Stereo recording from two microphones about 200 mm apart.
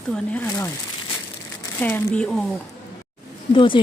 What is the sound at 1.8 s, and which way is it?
Speech, 10° left (ahead or behind).